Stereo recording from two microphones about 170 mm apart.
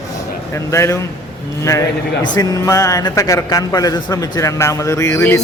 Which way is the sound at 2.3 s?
20° left (ahead or behind).